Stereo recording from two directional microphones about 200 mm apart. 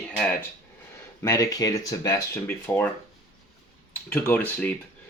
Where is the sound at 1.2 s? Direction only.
15° left (ahead or behind).